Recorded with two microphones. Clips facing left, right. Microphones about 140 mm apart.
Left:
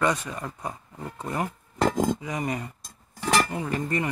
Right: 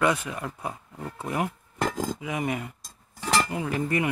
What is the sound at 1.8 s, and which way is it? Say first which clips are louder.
Speech: left 5 dB; 30° left (ahead or behind).